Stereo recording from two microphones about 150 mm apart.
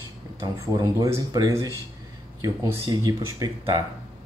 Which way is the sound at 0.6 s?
25° right (ahead or behind).